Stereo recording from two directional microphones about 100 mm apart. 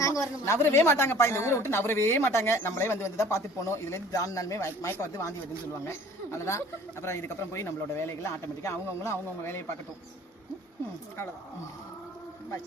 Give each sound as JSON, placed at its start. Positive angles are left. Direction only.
{"t": 0.0, "sound": "speech", "side_deg": 35}